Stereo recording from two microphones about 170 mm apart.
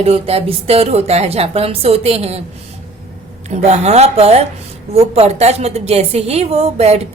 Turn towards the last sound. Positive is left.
turn(degrees=-40)  # may be behind; listen again after turning